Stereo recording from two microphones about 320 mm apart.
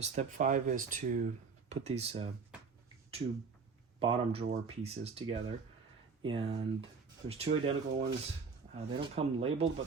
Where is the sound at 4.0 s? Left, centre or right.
Centre.